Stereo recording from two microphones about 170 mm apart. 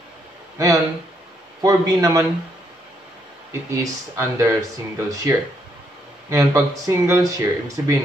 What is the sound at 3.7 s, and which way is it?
Speech, 20° right (ahead or behind).